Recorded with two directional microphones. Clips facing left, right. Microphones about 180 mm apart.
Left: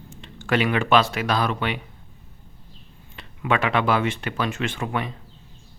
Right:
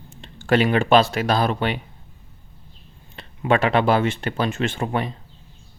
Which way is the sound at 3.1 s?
30° right (ahead or behind).